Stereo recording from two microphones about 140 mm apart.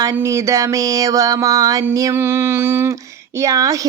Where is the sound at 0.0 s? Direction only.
20° right (ahead or behind).